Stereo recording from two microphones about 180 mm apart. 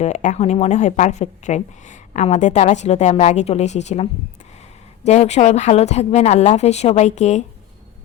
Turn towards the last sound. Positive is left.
turn(degrees=40)  # may be behind; listen again after turning